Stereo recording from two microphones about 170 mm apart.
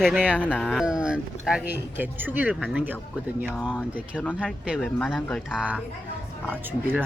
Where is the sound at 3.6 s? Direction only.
10° left (ahead or behind).